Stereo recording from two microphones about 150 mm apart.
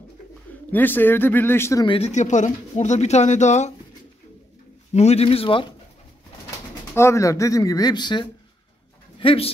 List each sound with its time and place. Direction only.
0.7 s speech: 10° left (ahead or behind)
1.9 s speech: 45° left (ahead or behind)
4.9 s speech: 45° left (ahead or behind)
6.9 s speech: 20° left (ahead or behind); by 9.5 s 35° left (ahead or behind)